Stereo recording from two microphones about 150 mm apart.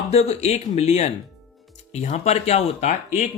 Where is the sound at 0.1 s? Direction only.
45° left (ahead or behind).